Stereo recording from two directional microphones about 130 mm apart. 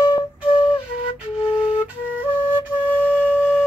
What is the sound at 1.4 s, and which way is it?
Flute, 10° right (ahead or behind).